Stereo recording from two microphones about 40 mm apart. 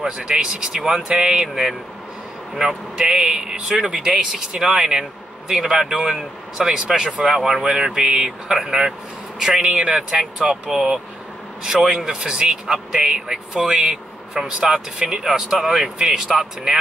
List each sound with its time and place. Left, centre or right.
0.0 s speech: centre
16.3 s speech: centre